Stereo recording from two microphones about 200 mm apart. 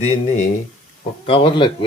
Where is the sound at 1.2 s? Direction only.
25° left (ahead or behind).